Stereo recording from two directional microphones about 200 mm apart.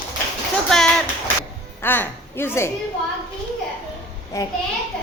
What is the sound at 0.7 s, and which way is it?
A woman's voice, 5° left (ahead or behind).